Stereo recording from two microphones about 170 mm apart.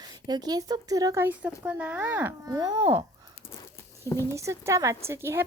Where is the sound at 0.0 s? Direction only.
25° right (ahead or behind).